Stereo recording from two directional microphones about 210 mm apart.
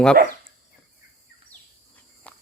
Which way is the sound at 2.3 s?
5° left (ahead or behind).